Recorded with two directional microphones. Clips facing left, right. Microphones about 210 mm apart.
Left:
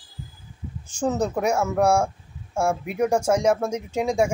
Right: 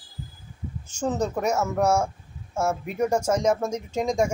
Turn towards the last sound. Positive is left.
turn(degrees=10)  # may be behind; listen again after turning